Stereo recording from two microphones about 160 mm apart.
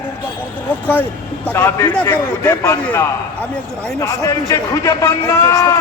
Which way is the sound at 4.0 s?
20° left (ahead or behind).